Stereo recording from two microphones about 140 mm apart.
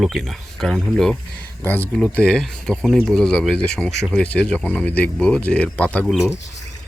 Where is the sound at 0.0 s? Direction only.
Centre (ahead or behind).